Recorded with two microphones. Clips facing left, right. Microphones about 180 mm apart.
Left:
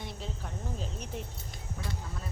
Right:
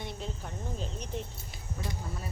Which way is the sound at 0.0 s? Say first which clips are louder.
Right 2 dB; centre (ahead or behind).